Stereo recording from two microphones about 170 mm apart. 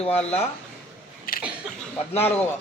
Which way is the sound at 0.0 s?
35° left (ahead or behind).